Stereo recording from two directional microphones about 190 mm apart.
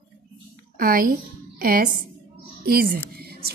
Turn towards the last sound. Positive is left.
turn(degrees=-55)  # may be behind; listen again after turning